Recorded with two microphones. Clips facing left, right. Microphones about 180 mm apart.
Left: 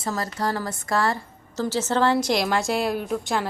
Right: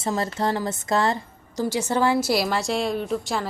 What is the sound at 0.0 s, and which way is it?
A woman's voice, 25° right (ahead or behind).